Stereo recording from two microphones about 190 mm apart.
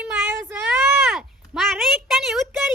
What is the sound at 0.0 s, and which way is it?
Child singing, 10° right (ahead or behind).